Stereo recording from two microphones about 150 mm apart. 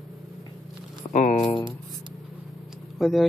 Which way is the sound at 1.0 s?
30° left (ahead or behind).